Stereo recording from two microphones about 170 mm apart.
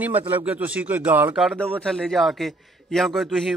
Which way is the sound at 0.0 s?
10° right (ahead or behind).